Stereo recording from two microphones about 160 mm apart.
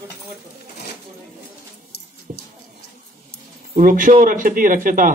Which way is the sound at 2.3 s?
50° right (ahead or behind).